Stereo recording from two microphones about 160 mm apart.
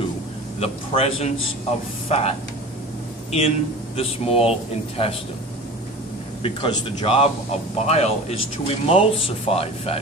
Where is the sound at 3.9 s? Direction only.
35° left (ahead or behind).